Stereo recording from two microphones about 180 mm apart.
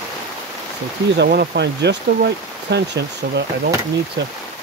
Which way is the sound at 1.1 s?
65° right (ahead or behind).